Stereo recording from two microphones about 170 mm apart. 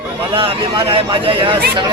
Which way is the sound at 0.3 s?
30° right (ahead or behind).